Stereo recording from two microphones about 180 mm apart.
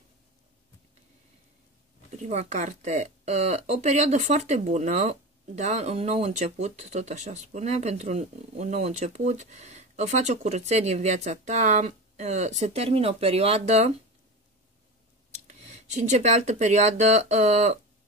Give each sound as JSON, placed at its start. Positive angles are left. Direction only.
{"t": 2.2, "sound": "speech", "side_deg": -40}
{"t": 15.4, "sound": "speech", "side_deg": -40}